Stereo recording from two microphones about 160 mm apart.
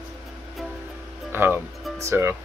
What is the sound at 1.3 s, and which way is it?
Music, 15° right (ahead or behind).